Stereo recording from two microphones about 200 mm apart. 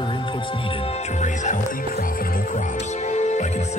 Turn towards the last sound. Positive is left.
turn(degrees=35)  # may be behind; listen again after turning